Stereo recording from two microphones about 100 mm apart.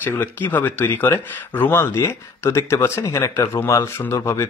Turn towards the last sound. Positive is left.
turn(degrees=30)  # may be behind; listen again after turning